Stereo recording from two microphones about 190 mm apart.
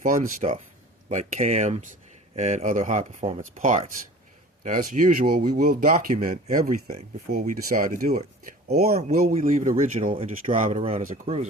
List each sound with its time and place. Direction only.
0.0 s speech: 45° right (ahead or behind)
9.0 s speech: 35° right (ahead or behind)